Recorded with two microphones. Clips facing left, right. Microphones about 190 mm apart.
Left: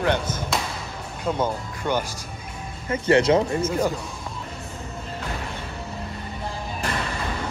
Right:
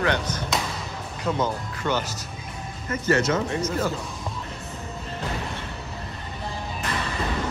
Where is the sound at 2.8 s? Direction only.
30° left (ahead or behind).